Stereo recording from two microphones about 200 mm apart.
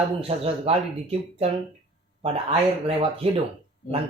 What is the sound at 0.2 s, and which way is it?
Speech, 30° right (ahead or behind).